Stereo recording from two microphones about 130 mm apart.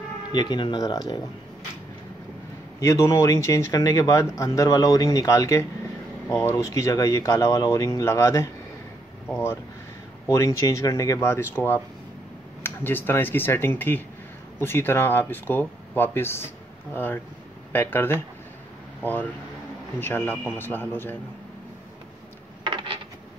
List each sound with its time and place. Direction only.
0.3 s speech: 35° left (ahead or behind)
2.8 s speech: 20° left (ahead or behind)
10.2 s speech: 25° left (ahead or behind)
22.6 s a sound: 40° right (ahead or behind)